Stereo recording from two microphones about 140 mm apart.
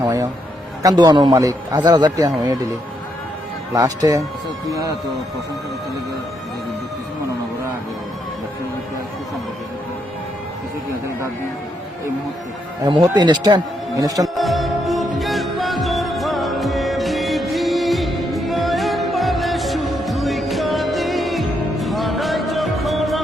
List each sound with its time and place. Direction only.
0.0 s music: 25° right (ahead or behind)
0.8 s a man's voice: 30° right (ahead or behind)
3.8 s a man's voice: 25° right (ahead or behind)
12.9 s speech: 30° right (ahead or behind)
14.3 s music: centre (ahead or behind)